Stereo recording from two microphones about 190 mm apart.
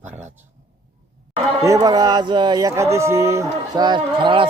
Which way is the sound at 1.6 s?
20° right (ahead or behind).